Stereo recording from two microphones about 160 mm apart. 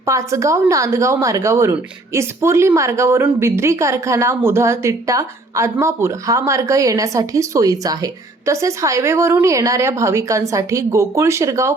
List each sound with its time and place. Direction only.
0.0 s a woman's voice: 20° right (ahead or behind)